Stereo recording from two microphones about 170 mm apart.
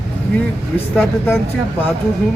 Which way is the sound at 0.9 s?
10° left (ahead or behind).